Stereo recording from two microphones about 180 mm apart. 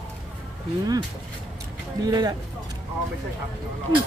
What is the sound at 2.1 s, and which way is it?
Speech, 20° right (ahead or behind).